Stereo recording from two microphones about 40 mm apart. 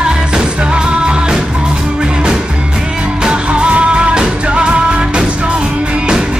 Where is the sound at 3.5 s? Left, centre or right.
Right.